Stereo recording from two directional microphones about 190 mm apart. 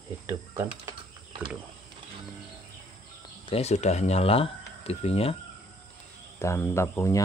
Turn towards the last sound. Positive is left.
turn(degrees=15)  # may be behind; listen again after turning